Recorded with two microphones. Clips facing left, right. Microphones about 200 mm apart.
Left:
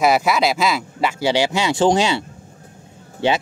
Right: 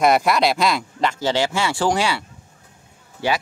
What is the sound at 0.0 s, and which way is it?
Speech, centre (ahead or behind).